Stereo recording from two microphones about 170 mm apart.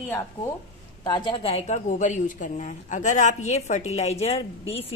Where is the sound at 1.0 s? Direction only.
25° left (ahead or behind).